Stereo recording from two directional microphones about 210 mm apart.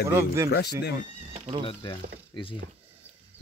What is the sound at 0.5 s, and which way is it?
Speech, 50° left (ahead or behind).